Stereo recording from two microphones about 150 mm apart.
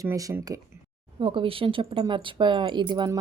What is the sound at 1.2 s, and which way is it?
A woman's voice, 40° right (ahead or behind).